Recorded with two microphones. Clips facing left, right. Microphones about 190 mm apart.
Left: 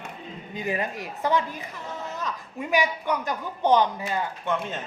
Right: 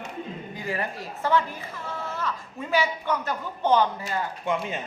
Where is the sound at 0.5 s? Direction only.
20° left (ahead or behind).